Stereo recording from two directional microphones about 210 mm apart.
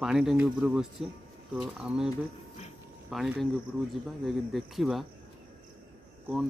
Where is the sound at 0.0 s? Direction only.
Centre (ahead or behind).